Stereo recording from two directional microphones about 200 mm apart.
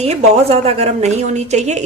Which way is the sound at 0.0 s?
30° right (ahead or behind).